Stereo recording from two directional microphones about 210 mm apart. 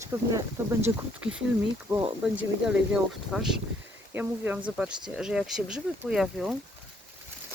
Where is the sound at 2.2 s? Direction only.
5° right (ahead or behind).